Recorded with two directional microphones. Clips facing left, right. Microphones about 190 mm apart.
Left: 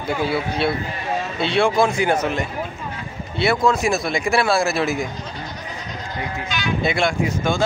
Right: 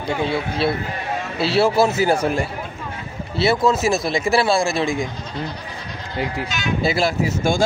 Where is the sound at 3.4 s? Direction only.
5° right (ahead or behind).